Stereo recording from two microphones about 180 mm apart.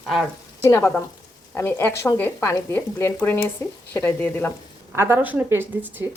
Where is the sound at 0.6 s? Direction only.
15° left (ahead or behind).